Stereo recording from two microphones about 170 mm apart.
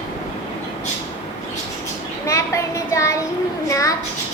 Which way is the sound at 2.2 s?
15° left (ahead or behind).